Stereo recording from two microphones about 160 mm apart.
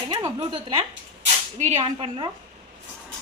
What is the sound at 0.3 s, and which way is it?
A woman's voice, 35° right (ahead or behind).